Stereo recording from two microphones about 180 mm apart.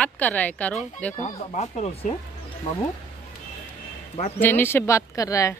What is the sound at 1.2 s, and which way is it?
Speech, 40° left (ahead or behind).